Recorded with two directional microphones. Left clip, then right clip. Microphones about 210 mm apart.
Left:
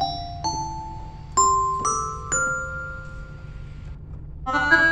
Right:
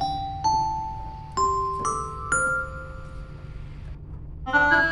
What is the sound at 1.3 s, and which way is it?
Glockenspiel, 20° left (ahead or behind).